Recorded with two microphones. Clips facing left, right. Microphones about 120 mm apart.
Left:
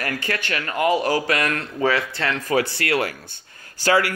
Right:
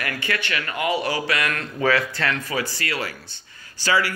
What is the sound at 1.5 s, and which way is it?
Speech, 25° left (ahead or behind).